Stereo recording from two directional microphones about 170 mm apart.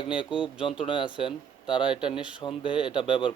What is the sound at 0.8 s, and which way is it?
Speech, 30° left (ahead or behind).